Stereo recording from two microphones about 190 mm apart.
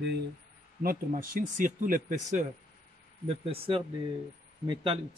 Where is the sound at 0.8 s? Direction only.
45° right (ahead or behind).